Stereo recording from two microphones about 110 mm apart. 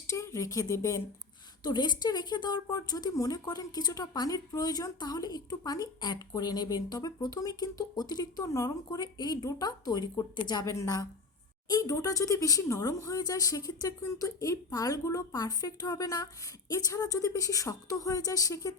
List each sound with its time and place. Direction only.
0.1 s speech: 25° left (ahead or behind)
1.6 s a woman's voice: 40° left (ahead or behind)